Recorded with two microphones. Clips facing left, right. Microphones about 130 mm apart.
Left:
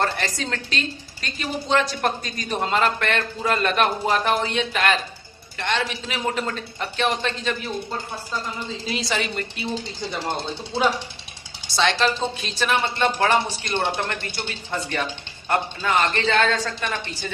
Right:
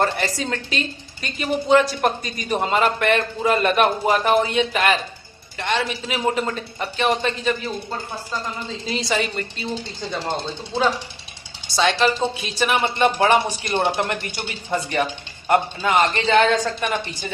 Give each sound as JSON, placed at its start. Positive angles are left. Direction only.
{"t": 0.0, "sound": "a woman's voice", "side_deg": -10}
{"t": 8.9, "sound": "speech", "side_deg": 0}
{"t": 11.8, "sound": "a woman's voice", "side_deg": -10}